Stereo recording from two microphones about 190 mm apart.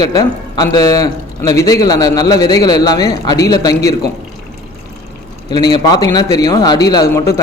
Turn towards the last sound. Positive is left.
turn(degrees=20)  # may be behind; listen again after turning